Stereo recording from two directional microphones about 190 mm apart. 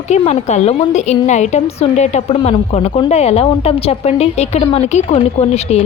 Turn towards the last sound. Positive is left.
turn(degrees=35)  # may be behind; listen again after turning